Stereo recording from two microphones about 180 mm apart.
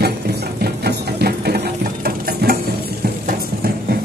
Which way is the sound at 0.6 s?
60° right (ahead or behind).